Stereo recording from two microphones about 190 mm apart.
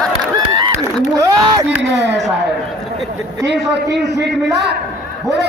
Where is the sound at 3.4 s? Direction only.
65° right (ahead or behind).